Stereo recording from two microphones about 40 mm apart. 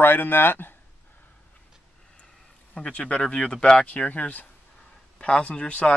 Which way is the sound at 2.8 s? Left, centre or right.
Left.